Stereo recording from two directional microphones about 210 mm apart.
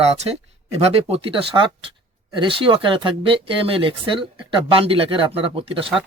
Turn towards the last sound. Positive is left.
turn(degrees=-25)  # may be behind; listen again after turning